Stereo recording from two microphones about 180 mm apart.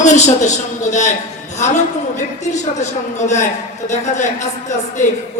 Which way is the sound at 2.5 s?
40° left (ahead or behind).